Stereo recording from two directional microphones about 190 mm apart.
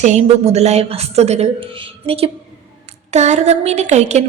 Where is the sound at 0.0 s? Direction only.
40° right (ahead or behind).